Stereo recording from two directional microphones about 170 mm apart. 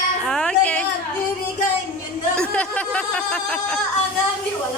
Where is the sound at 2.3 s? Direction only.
5° left (ahead or behind).